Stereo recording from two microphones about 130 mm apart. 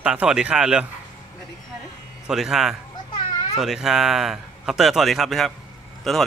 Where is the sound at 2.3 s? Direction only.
5° right (ahead or behind).